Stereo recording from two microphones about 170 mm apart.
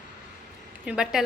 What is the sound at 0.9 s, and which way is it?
Speech, 5° right (ahead or behind).